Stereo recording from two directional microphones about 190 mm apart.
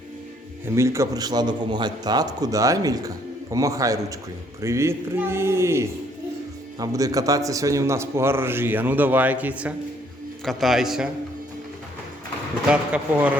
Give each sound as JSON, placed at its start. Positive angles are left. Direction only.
{"t": 0.8, "sound": "a man's voice", "side_deg": -15}
{"t": 12.7, "sound": "a man's voice", "side_deg": -5}